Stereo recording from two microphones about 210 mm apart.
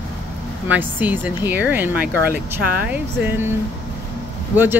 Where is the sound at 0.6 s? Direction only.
5° right (ahead or behind).